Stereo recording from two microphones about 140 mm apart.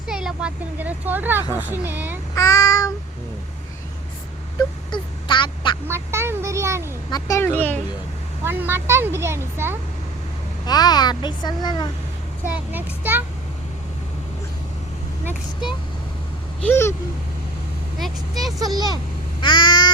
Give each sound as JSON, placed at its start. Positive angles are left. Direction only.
{"t": 0.1, "sound": "speech", "side_deg": -5}
{"t": 2.3, "sound": "child singing", "side_deg": 25}
{"t": 4.9, "sound": "quack", "side_deg": 35}
{"t": 5.9, "sound": "a child's voice", "side_deg": -20}
{"t": 7.1, "sound": "speech", "side_deg": 20}
{"t": 8.4, "sound": "speech", "side_deg": -15}
{"t": 10.7, "sound": "a child's voice", "side_deg": 30}
{"t": 12.5, "sound": "speech", "side_deg": -10}
{"t": 16.6, "sound": "speech", "side_deg": 20}
{"t": 18.0, "sound": "speech", "side_deg": 0}
{"t": 19.4, "sound": "a child's voice", "side_deg": 35}